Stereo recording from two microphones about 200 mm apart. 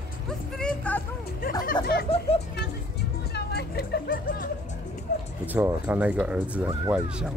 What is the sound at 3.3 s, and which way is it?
Music, 55° left (ahead or behind).